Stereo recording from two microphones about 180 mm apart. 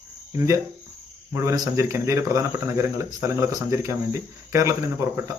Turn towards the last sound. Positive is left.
turn(degrees=-15)  # may be behind; listen again after turning